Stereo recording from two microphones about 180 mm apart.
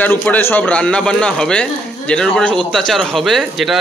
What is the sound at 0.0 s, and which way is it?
Speech, 10° left (ahead or behind).